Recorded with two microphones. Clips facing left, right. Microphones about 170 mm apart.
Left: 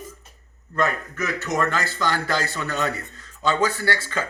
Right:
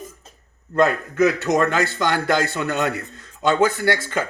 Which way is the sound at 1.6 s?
20° right (ahead or behind).